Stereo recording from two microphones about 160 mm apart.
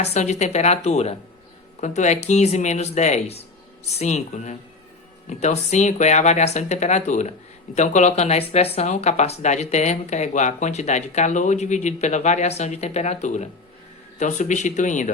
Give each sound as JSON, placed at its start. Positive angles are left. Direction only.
{"t": 0.0, "sound": "speech", "side_deg": 45}